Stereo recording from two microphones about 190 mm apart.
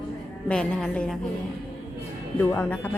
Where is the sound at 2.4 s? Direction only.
10° left (ahead or behind).